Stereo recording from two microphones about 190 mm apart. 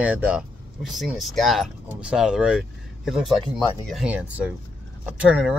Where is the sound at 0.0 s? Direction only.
5° right (ahead or behind).